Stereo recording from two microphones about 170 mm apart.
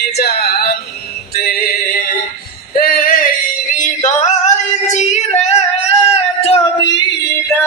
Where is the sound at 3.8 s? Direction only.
45° left (ahead or behind).